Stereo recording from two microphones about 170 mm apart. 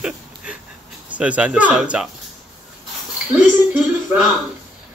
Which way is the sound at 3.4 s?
10° right (ahead or behind).